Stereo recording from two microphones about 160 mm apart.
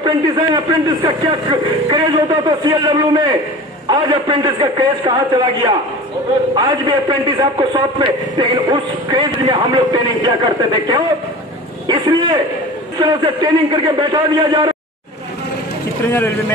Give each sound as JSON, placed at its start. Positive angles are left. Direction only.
{"t": 0.0, "sound": "a man's voice", "side_deg": -25}
{"t": 6.5, "sound": "a man's voice", "side_deg": -25}
{"t": 16.1, "sound": "speech", "side_deg": 10}